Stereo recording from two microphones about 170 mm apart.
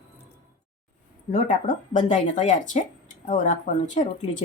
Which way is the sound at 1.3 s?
45° left (ahead or behind).